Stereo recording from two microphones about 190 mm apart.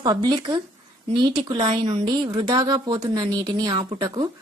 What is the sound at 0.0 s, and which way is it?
A woman's voice, 20° right (ahead or behind).